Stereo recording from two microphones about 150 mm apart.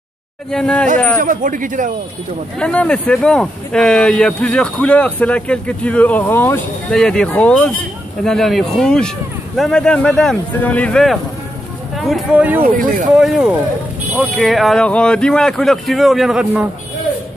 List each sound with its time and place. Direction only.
0.5 s speech: 5° left (ahead or behind)
1.2 s speech: 60° right (ahead or behind)
2.6 s speech: 5° left (ahead or behind)
6.9 s speech: 5° left (ahead or behind)
12.6 s speech: 65° right (ahead or behind)
13.1 s speech: 5° right (ahead or behind)